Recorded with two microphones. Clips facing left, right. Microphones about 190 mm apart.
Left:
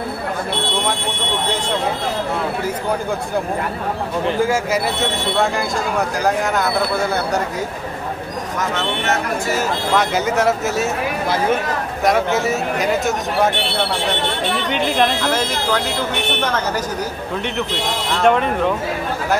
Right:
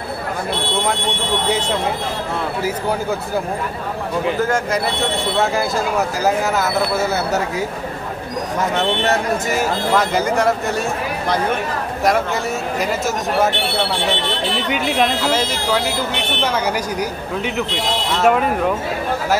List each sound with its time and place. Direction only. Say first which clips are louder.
4.4 s speech: left 1 dB; 5° left (ahead or behind)
8.5 s speech: right 3 dB; 35° right (ahead or behind)
9.9 s speech: even; centre (ahead or behind)
14.7 s speech: even; 5° right (ahead or behind)
18.1 s speech: even; 5° right (ahead or behind)